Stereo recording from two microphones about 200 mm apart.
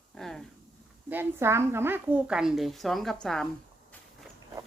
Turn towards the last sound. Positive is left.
turn(degrees=5)  # may be behind; listen again after turning